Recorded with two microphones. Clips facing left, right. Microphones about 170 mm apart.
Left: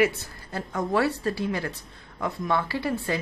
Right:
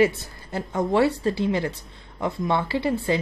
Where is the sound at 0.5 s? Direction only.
20° right (ahead or behind).